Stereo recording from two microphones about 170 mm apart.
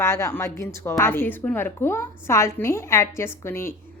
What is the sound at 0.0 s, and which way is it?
A woman's voice, 15° left (ahead or behind).